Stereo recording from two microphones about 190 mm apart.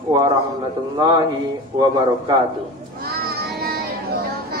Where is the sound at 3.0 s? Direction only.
55° right (ahead or behind).